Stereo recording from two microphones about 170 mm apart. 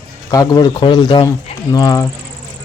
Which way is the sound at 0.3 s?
20° left (ahead or behind).